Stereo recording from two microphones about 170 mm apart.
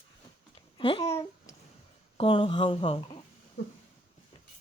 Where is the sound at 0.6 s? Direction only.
30° left (ahead or behind).